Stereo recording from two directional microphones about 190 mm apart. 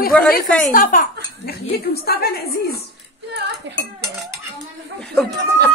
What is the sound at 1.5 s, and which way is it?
A woman's voice, 55° left (ahead or behind).